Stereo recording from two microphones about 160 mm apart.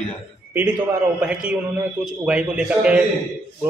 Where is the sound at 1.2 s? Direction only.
5° right (ahead or behind).